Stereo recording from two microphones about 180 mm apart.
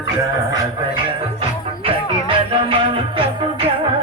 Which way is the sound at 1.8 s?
30° right (ahead or behind).